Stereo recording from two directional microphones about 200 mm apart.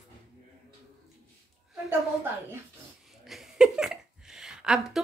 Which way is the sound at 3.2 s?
Centre (ahead or behind).